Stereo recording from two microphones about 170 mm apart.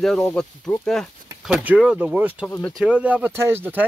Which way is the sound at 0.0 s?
5° left (ahead or behind).